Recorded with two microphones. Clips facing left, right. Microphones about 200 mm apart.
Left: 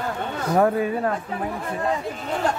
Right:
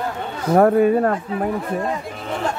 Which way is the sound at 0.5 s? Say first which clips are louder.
Right 7 dB; 50° right (ahead or behind).